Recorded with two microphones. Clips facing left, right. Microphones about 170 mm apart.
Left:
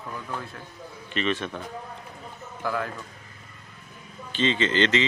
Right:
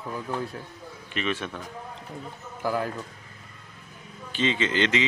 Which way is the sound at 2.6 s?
35° right (ahead or behind).